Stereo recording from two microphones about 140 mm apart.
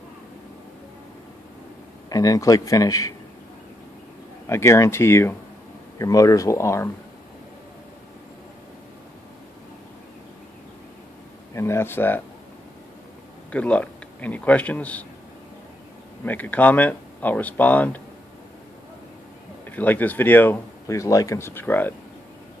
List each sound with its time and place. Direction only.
2.0 s speech: 25° left (ahead or behind)
4.5 s speech: 20° left (ahead or behind)
11.5 s speech: 20° left (ahead or behind)
13.5 s a man's voice: 10° left (ahead or behind)
16.3 s speech: 10° left (ahead or behind)
19.6 s speech: 10° left (ahead or behind)